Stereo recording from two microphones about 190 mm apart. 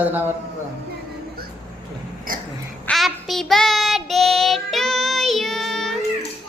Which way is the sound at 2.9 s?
Centre (ahead or behind).